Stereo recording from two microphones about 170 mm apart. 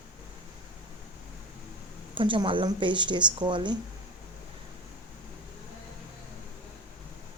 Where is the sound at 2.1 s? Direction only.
30° right (ahead or behind).